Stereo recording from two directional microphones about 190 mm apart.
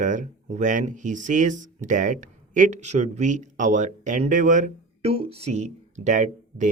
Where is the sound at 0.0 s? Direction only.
40° right (ahead or behind).